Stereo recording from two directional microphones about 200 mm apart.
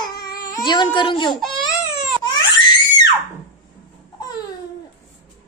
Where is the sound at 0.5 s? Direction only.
20° left (ahead or behind).